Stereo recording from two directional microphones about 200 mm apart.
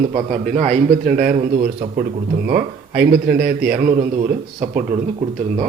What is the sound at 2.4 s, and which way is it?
A man's voice, 50° right (ahead or behind).